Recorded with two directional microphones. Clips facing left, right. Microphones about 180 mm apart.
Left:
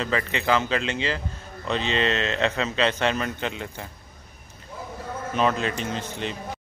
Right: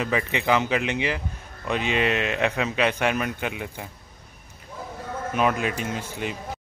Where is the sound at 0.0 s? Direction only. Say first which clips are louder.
Right 1 dB; 15° right (ahead or behind).